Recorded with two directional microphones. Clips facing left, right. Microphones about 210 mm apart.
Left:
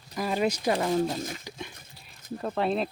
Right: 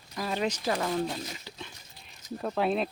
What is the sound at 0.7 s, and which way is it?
Speech, 25° left (ahead or behind).